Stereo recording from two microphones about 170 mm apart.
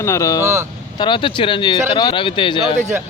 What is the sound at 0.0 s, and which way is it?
Speech, 20° left (ahead or behind).